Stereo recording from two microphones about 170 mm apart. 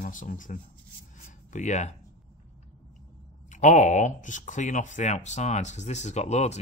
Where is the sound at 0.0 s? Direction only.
50° left (ahead or behind).